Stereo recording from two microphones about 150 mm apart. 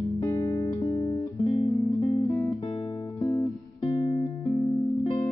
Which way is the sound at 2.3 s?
20° left (ahead or behind).